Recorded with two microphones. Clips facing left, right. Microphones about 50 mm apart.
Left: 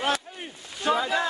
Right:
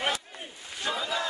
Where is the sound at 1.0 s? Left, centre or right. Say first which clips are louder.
Left 5 dB; left.